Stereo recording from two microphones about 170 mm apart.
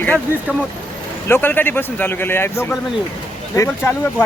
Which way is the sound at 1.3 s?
10° left (ahead or behind).